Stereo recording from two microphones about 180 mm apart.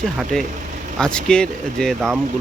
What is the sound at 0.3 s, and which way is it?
Speech, 5° left (ahead or behind).